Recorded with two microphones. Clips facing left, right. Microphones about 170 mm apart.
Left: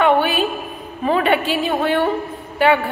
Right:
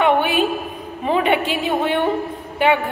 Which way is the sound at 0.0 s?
20° right (ahead or behind).